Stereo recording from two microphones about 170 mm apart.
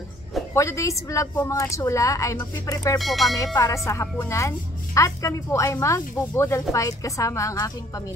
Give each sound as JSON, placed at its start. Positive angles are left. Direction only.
{"t": 0.6, "sound": "a woman's voice", "side_deg": 20}
{"t": 3.0, "sound": "speech", "side_deg": 0}
{"t": 3.5, "sound": "a woman's voice", "side_deg": 20}